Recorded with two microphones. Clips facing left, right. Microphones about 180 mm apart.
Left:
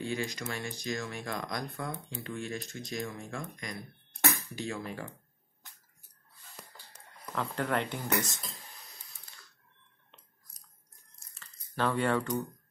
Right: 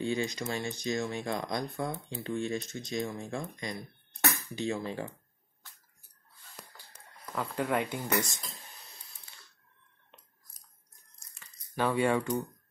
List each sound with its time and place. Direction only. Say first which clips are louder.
0.0 s speech: right 3 dB; 25° right (ahead or behind)
7.3 s speech: right 1 dB; 10° right (ahead or behind)
11.3 s a sound: right 1 dB; 10° right (ahead or behind)